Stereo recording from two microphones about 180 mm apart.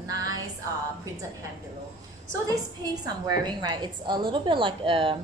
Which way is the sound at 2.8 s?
20° right (ahead or behind).